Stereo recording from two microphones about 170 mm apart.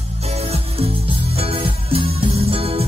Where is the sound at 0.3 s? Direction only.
35° right (ahead or behind).